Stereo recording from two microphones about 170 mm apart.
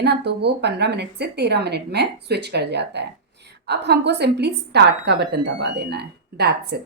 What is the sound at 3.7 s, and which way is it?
A woman's voice, 75° right (ahead or behind).